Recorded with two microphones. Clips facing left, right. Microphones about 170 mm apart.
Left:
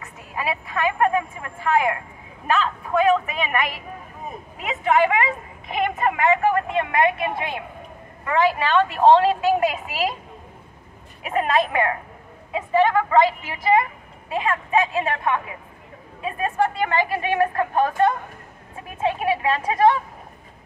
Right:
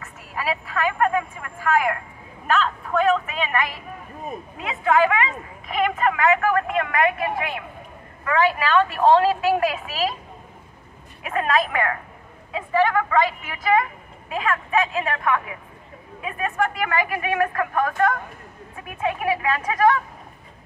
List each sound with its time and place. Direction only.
0.0 s speech: 20° left (ahead or behind)
11.2 s speech: 25° left (ahead or behind)